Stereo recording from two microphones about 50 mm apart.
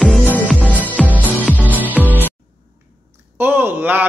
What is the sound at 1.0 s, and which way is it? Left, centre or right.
Music, right.